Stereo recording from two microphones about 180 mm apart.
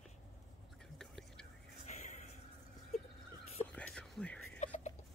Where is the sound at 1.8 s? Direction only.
40° left (ahead or behind).